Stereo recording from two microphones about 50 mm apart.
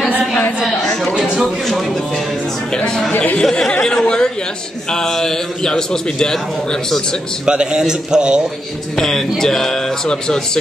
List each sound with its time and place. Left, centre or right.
1.2 s a sound: centre
2.7 s a man's voice: centre
3.1 s chatter: left
3.4 s a man's voice: centre
4.0 s a sound: centre
4.9 s a man's voice: centre
7.4 s a man's voice: centre
8.9 s a man's voice: centre